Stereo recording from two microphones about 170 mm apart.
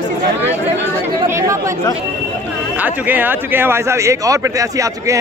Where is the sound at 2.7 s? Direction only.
10° right (ahead or behind).